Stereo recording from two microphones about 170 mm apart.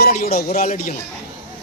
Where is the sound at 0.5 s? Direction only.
55° left (ahead or behind).